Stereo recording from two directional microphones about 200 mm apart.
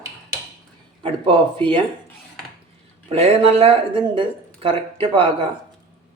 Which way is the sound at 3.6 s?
25° right (ahead or behind).